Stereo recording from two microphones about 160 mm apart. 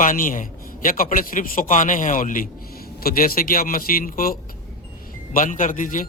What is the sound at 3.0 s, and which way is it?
A man's voice, 65° left (ahead or behind).